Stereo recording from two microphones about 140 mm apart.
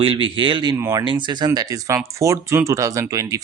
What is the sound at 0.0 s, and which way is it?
Speech, 40° right (ahead or behind).